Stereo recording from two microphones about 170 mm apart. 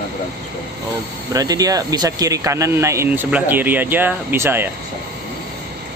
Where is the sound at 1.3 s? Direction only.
20° right (ahead or behind).